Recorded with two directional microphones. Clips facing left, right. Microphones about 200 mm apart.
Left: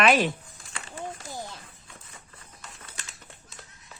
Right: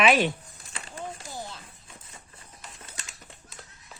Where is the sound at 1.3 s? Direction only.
15° left (ahead or behind).